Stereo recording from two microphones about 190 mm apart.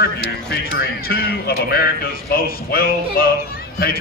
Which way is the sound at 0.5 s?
55° left (ahead or behind).